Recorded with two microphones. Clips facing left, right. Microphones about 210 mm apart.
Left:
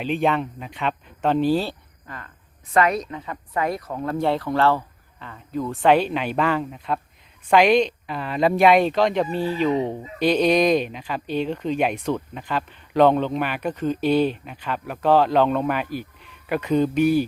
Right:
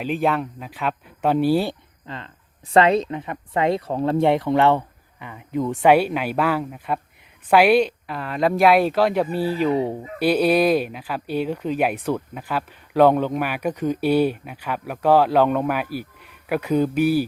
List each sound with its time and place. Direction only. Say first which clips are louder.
0.0 s speech: even; centre (ahead or behind)
2.0 s speech: right 4 dB; 25° right (ahead or behind); by 17.2 s 10° right (ahead or behind)